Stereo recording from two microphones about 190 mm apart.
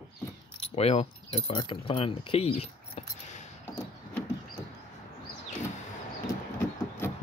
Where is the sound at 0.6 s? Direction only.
30° left (ahead or behind).